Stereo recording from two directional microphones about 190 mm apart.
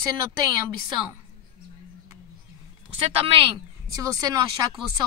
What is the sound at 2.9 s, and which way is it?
Speech, 30° right (ahead or behind).